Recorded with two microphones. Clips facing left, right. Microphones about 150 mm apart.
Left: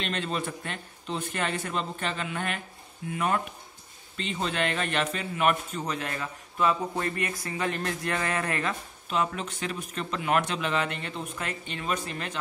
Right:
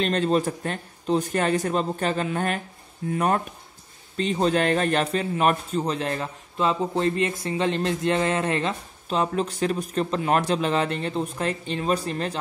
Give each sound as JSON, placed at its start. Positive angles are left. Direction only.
{"t": 0.0, "sound": "a man's voice", "side_deg": -40}